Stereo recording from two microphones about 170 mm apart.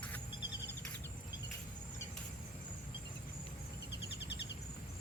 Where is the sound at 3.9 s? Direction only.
90° left.